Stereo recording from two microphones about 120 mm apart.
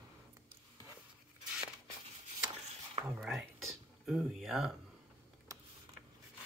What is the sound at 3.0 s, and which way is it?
Whispering, 5° right (ahead or behind).